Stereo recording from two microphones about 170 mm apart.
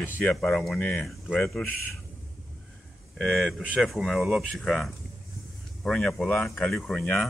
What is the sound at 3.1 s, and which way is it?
Speech, centre (ahead or behind).